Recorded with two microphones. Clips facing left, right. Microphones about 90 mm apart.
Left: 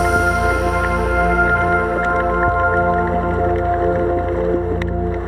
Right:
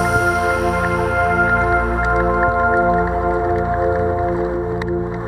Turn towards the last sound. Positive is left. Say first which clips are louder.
# left 1 dB
turn(degrees=-20)  # may be behind; listen again after turning